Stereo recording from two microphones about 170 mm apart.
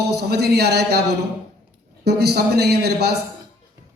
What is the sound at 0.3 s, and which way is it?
Speech, 70° right (ahead or behind).